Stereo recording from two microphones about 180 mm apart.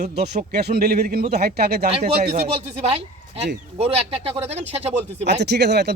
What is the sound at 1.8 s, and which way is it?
Speech, 35° right (ahead or behind).